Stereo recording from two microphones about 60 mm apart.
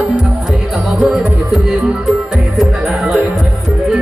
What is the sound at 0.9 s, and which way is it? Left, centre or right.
Music, centre.